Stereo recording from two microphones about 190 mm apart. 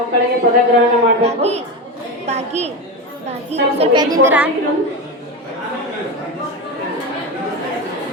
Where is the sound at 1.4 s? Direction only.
35° right (ahead or behind).